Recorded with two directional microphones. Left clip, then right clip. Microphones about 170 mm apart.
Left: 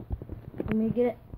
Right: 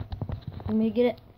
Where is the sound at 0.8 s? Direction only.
35° right (ahead or behind).